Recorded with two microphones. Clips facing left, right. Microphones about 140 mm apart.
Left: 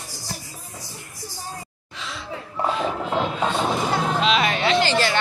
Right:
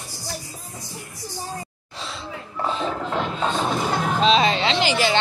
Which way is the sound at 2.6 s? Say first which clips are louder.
Left 2 dB; 15° left (ahead or behind).